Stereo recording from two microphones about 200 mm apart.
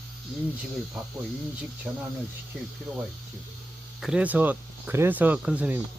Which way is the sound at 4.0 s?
5° right (ahead or behind).